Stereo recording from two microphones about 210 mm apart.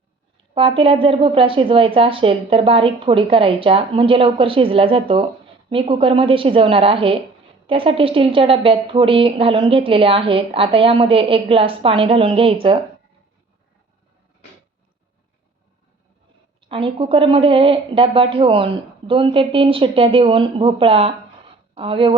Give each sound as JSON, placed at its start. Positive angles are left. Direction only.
{"t": 0.5, "sound": "a woman's voice", "side_deg": -25}
{"t": 16.6, "sound": "a woman's voice", "side_deg": -25}